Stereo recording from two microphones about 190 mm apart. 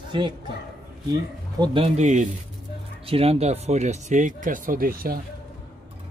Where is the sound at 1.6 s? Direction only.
25° right (ahead or behind).